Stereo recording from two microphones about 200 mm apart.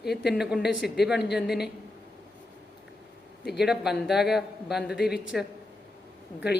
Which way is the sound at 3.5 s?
Centre (ahead or behind).